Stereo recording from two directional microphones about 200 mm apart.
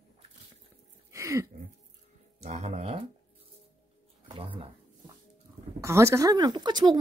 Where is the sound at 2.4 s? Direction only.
35° right (ahead or behind).